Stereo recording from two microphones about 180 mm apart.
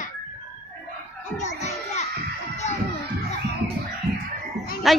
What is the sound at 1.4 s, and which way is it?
Music, 40° left (ahead or behind).